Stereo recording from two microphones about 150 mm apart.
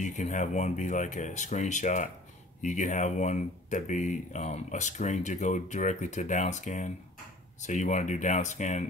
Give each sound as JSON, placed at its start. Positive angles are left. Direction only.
{"t": 0.0, "sound": "speech", "side_deg": 55}